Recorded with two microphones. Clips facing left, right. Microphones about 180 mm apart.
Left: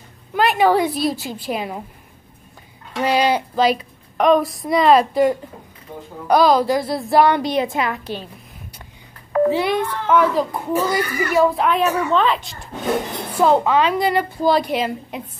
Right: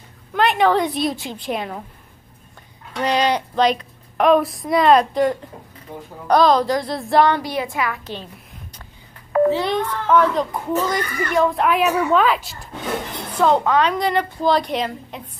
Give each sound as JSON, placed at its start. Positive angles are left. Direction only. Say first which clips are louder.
{"t": 0.3, "sound": "a child's voice", "louder": "left 1 dB", "side_deg": 5}
{"t": 2.9, "sound": "a child's voice", "louder": "left 1 dB", "side_deg": 5}
{"t": 7.3, "sound": "a woman's voice", "louder": "left 4 dB", "side_deg": 20}
{"t": 8.0, "sound": "a woman's voice", "louder": "left 3 dB", "side_deg": 10}
{"t": 9.5, "sound": "a child's voice", "louder": "left 1 dB", "side_deg": 10}
{"t": 13.3, "sound": "a child's voice", "louder": "left 1 dB", "side_deg": 5}